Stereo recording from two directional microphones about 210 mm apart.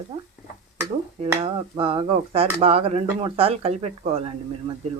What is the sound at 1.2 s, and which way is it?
Speech, 30° right (ahead or behind).